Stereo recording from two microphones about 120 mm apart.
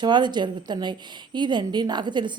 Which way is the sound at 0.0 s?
40° right (ahead or behind).